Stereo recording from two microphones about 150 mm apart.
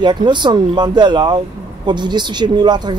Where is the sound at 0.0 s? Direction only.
30° right (ahead or behind).